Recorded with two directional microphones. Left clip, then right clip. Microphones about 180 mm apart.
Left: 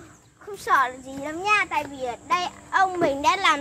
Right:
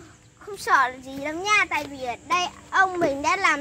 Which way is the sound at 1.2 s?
35° right (ahead or behind).